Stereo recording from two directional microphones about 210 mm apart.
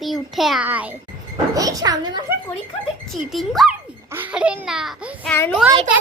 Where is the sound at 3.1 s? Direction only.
Centre (ahead or behind).